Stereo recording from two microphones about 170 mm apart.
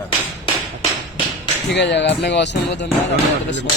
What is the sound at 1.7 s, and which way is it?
Speech, 90° left.